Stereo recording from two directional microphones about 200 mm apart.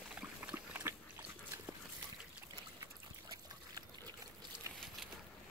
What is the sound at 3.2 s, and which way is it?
Trickle, 20° right (ahead or behind).